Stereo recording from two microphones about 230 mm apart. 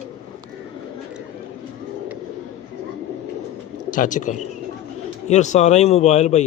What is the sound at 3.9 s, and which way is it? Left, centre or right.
A man's voice, left.